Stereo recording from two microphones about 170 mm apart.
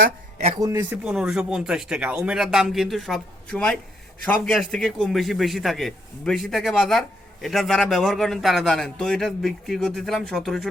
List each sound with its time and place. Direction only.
0.3 s speech: 40° right (ahead or behind)
0.6 s a man's voice: 15° right (ahead or behind); by 10.7 s centre (ahead or behind)